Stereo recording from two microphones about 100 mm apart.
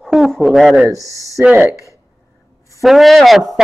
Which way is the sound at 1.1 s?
35° left (ahead or behind).